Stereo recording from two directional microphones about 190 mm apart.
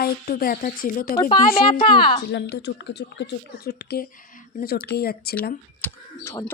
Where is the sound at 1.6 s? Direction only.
25° left (ahead or behind).